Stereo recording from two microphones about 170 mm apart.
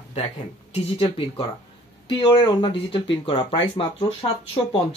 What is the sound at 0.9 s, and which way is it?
Speech, 35° left (ahead or behind).